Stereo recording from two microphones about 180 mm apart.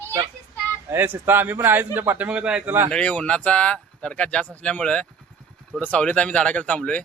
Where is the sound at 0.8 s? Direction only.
10° right (ahead or behind).